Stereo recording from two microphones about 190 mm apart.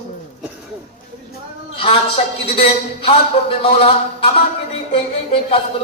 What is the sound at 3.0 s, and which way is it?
A man's voice, 30° left (ahead or behind).